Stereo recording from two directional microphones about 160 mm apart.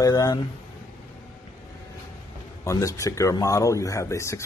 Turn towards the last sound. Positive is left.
turn(degrees=20)  # may be behind; listen again after turning